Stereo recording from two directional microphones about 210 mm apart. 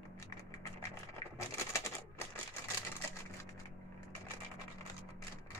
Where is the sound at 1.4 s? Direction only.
15° left (ahead or behind).